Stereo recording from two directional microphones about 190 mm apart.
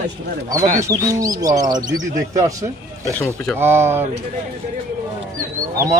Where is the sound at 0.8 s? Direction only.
15° right (ahead or behind).